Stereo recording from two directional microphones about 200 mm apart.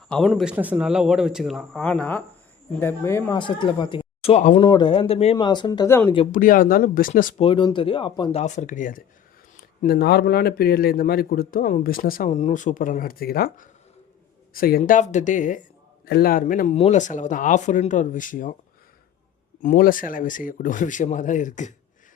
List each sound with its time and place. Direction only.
0.1 s speech: centre (ahead or behind); by 4.6 s 30° left (ahead or behind)
4.6 s speech: 20° left (ahead or behind)
6.3 s a man's voice: 45° left (ahead or behind)
7.3 s speech: 25° left (ahead or behind)
9.8 s a man's voice: 50° left (ahead or behind)
16.0 s speech: 50° left (ahead or behind)
19.6 s speech: 45° left (ahead or behind)